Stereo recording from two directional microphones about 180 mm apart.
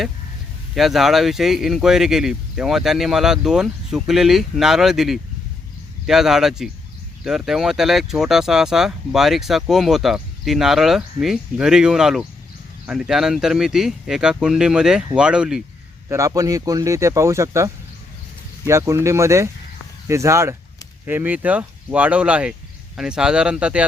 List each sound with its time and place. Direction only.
0.8 s speech: centre (ahead or behind)
16.0 s speech: 15° right (ahead or behind)